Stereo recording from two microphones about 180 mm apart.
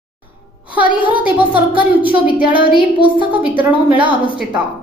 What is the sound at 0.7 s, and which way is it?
Speech, 10° right (ahead or behind).